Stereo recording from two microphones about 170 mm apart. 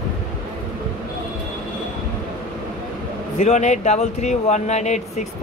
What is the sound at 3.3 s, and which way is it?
Speech, 45° left (ahead or behind).